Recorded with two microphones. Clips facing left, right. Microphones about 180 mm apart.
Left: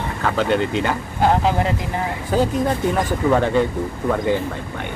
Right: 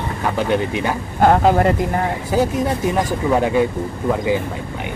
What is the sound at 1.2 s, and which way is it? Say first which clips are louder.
Speech: right 4 dB; 50° right (ahead or behind).